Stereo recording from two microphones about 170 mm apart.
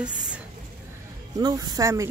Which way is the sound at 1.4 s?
25° right (ahead or behind).